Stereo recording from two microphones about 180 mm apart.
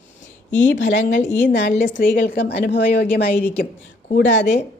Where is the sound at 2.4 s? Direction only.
75° left (ahead or behind).